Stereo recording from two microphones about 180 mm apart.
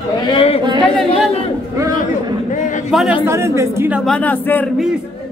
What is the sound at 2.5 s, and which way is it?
Speech, 45° left (ahead or behind).